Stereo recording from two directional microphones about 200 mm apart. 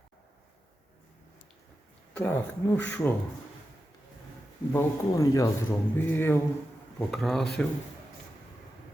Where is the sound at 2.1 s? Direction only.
10° left (ahead or behind).